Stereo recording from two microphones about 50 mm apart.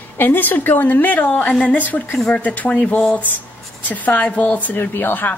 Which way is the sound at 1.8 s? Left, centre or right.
Left.